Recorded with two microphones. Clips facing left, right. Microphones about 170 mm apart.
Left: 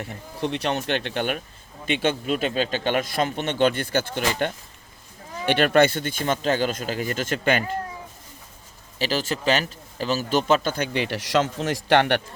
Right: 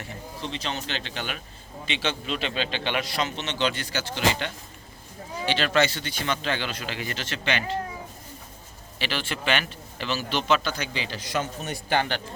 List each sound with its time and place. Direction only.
0.3 s a man's voice: 60° left (ahead or behind)
9.0 s a man's voice: 40° left (ahead or behind); by 12.2 s 70° left (ahead or behind)